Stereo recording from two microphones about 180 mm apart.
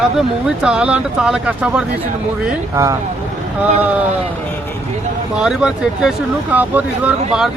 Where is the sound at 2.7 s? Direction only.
15° right (ahead or behind).